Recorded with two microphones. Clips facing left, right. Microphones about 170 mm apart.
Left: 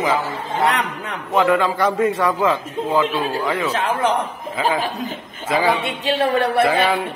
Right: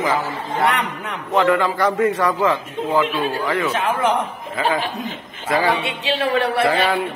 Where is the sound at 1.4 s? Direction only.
15° left (ahead or behind).